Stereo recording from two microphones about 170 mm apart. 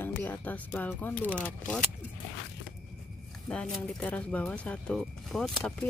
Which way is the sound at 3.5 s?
5° left (ahead or behind).